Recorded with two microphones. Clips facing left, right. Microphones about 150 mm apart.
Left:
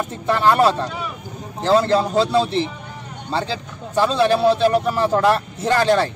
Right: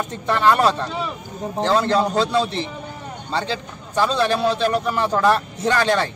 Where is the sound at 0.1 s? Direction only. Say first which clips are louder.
Even; 5° left (ahead or behind).